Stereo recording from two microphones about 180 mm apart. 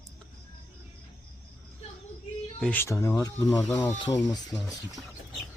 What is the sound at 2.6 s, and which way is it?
Speech, 10° left (ahead or behind).